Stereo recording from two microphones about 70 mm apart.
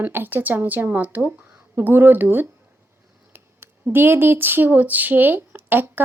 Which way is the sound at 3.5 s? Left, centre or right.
Right.